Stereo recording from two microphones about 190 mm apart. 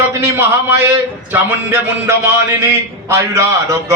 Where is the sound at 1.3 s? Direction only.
10° right (ahead or behind).